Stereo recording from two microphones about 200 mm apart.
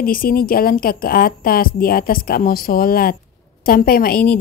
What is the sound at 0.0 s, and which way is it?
A woman's voice, 45° left (ahead or behind).